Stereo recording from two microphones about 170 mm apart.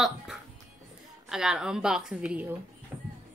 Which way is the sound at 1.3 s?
5° right (ahead or behind).